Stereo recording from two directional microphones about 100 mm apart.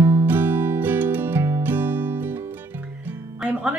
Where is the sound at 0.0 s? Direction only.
25° right (ahead or behind).